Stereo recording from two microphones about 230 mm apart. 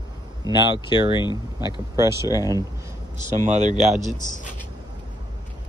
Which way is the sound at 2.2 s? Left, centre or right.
Centre.